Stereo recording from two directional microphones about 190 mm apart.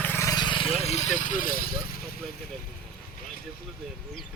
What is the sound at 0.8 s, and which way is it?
Speech, 35° left (ahead or behind).